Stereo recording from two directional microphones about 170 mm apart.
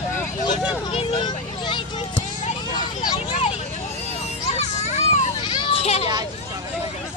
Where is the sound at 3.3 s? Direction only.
35° left (ahead or behind).